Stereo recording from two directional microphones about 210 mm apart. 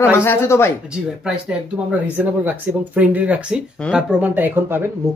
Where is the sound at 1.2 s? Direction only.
5° right (ahead or behind).